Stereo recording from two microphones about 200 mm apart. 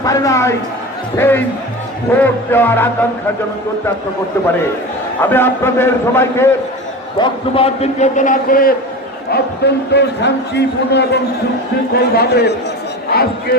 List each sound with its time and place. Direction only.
0.0 s a man's voice: 15° left (ahead or behind)
5.2 s a man's voice: 10° left (ahead or behind)
7.2 s a man's voice: 30° left (ahead or behind); by 8.7 s 45° left (ahead or behind)
9.3 s a man's voice: 55° left (ahead or behind)